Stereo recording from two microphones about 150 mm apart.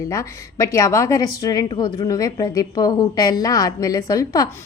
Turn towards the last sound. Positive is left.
turn(degrees=25)  # may be behind; listen again after turning